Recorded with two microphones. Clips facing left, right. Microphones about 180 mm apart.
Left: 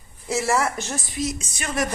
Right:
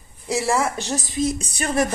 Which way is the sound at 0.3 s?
15° right (ahead or behind).